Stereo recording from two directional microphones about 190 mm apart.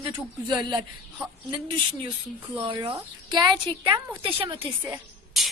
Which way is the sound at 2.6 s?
25° right (ahead or behind).